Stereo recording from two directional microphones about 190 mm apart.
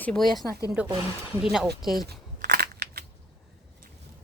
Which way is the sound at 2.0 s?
55° right (ahead or behind).